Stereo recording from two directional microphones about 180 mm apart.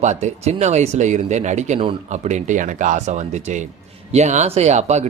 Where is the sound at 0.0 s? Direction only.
40° right (ahead or behind).